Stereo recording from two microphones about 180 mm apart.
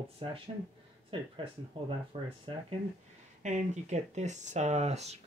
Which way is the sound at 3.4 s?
40° right (ahead or behind).